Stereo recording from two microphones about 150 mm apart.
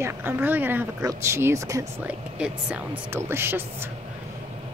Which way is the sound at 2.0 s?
10° right (ahead or behind).